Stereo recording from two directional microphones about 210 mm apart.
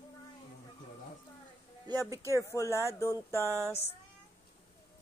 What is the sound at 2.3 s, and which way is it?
Speech, 15° left (ahead or behind).